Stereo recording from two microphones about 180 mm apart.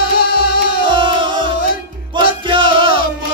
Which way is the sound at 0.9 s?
25° right (ahead or behind).